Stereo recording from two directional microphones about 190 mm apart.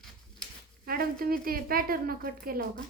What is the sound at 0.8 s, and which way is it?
A woman's voice, 50° right (ahead or behind).